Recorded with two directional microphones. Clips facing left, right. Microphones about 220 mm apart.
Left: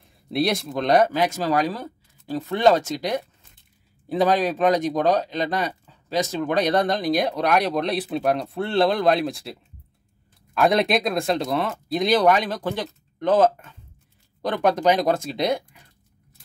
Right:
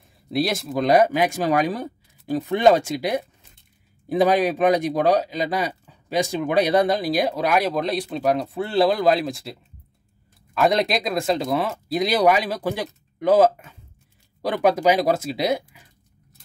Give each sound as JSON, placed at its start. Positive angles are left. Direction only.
{"t": 0.3, "sound": "speech", "side_deg": 0}